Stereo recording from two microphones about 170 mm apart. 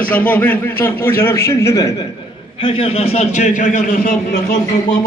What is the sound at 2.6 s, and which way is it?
A man's voice, 35° left (ahead or behind).